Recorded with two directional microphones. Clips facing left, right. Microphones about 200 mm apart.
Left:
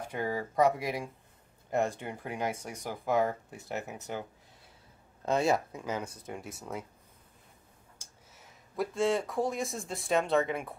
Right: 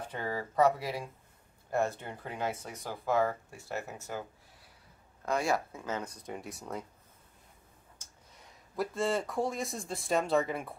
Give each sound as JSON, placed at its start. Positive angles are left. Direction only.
{"t": 0.1, "sound": "speech", "side_deg": 15}
{"t": 5.2, "sound": "speech", "side_deg": 25}
{"t": 8.0, "sound": "speech", "side_deg": 0}